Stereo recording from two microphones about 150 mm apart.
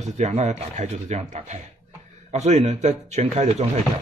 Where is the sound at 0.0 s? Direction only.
50° right (ahead or behind).